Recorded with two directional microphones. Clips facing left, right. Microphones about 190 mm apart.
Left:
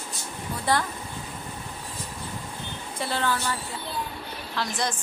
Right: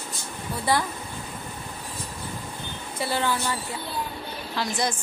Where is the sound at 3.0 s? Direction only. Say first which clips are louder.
Right 2 dB; 10° right (ahead or behind).